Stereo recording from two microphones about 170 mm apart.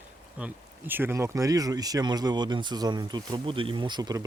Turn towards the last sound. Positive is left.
turn(degrees=-25)  # may be behind; listen again after turning